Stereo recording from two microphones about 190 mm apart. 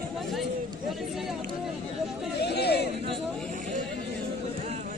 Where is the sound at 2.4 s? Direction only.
60° left (ahead or behind).